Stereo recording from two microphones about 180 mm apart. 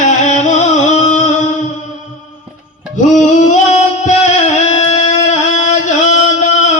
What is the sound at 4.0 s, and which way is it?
Music, 40° left (ahead or behind).